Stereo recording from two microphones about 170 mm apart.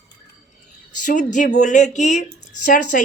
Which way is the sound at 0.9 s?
50° left (ahead or behind).